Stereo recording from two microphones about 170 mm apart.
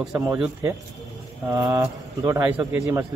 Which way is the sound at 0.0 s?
5° right (ahead or behind).